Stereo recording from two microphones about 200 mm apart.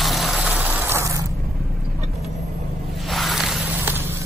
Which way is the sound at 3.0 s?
Centre (ahead or behind).